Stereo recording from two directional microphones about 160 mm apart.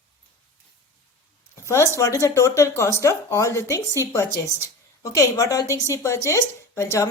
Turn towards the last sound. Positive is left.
turn(degrees=20)  # may be behind; listen again after turning